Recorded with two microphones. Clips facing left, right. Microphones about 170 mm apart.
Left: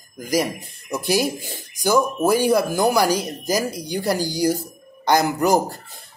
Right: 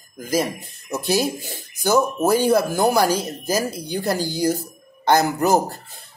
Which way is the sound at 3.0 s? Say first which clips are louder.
Even; 15° left (ahead or behind).